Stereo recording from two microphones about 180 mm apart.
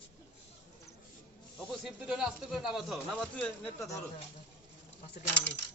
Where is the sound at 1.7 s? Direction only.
5° right (ahead or behind).